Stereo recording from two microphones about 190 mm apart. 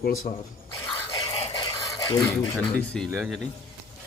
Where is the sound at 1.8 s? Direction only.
20° left (ahead or behind).